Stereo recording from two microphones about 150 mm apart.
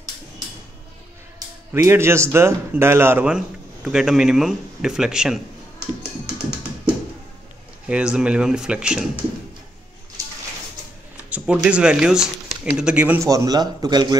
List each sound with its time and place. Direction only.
1.7 s a man's voice: 15° right (ahead or behind)
7.9 s speech: 5° right (ahead or behind)
11.2 s speech: 10° right (ahead or behind)
13.3 s a man's voice: 25° right (ahead or behind)